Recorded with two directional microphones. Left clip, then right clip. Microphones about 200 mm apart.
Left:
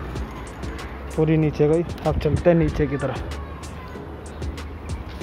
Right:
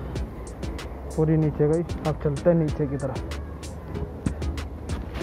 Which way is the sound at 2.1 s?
Centre (ahead or behind).